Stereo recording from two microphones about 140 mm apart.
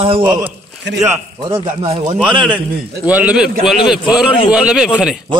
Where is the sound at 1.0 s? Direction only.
15° right (ahead or behind).